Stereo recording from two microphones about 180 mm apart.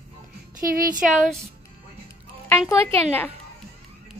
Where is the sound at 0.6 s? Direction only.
50° right (ahead or behind).